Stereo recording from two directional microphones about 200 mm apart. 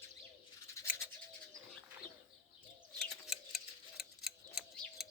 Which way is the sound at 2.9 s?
Centre (ahead or behind).